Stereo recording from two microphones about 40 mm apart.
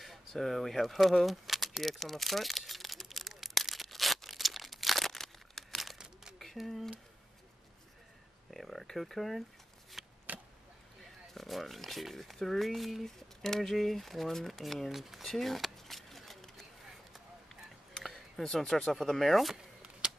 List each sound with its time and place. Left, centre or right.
0.0 s speech: centre
1.8 s a sound: centre
6.6 s speech: centre
8.5 s speech: centre
10.0 s a sound: centre
11.1 s speech: centre
15.3 s a sound: centre
17.9 s speech: centre
19.3 s speech: centre